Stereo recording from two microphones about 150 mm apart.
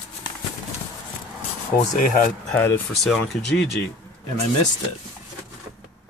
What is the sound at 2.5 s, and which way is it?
Speech, 15° left (ahead or behind).